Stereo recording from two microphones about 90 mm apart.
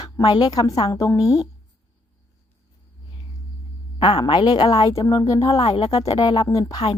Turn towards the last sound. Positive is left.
turn(degrees=40)  # may be behind; listen again after turning